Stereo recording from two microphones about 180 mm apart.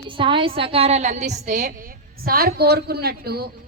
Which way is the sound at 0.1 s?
30° right (ahead or behind).